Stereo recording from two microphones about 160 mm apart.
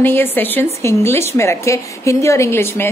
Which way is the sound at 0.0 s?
15° left (ahead or behind).